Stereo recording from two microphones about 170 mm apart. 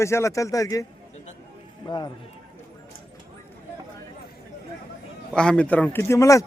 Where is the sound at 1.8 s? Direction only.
25° left (ahead or behind).